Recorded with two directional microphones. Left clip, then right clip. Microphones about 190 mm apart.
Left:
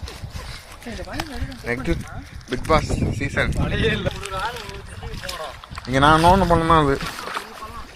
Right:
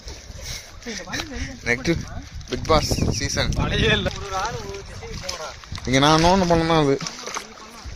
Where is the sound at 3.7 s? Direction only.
55° right (ahead or behind).